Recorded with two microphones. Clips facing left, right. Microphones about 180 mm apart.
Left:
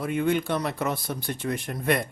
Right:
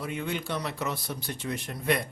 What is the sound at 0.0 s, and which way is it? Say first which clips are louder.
Speech: left 8 dB; 50° left (ahead or behind).